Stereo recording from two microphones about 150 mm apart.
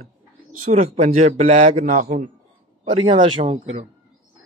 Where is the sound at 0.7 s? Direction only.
50° right (ahead or behind).